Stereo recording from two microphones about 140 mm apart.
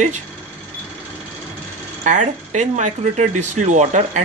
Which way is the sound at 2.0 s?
60° right (ahead or behind).